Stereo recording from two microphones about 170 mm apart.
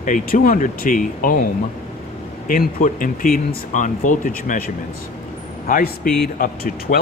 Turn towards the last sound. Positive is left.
turn(degrees=55)  # may be behind; listen again after turning